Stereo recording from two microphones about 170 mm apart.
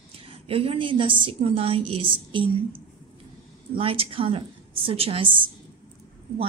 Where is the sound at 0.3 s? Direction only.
35° right (ahead or behind).